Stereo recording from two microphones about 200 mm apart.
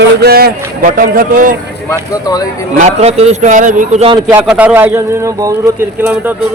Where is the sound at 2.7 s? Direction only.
30° right (ahead or behind).